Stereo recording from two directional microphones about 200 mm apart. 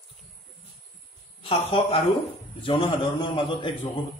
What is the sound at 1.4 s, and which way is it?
A man's voice, 30° left (ahead or behind).